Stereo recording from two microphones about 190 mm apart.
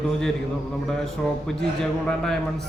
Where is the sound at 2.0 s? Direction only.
5° left (ahead or behind).